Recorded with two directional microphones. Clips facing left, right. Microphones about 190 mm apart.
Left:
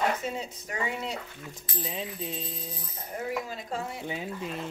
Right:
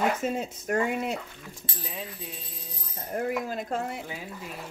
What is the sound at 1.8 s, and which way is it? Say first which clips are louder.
Frying: left 4 dB; 25° left (ahead or behind).